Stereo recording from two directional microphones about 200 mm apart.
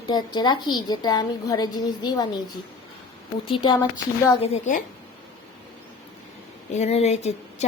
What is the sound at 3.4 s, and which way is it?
Speech, 25° left (ahead or behind).